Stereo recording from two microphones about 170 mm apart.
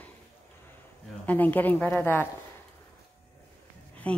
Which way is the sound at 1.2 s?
10° left (ahead or behind).